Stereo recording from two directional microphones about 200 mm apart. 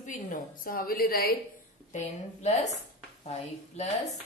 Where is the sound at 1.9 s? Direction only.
35° left (ahead or behind).